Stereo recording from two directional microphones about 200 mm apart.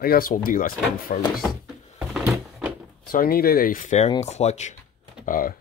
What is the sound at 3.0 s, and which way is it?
Speech, 45° left (ahead or behind).